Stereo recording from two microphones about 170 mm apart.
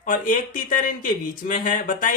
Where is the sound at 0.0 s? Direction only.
55° left (ahead or behind).